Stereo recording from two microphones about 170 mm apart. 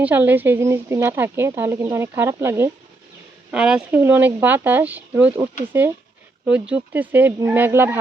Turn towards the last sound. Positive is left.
turn(degrees=-15)  # may be behind; listen again after turning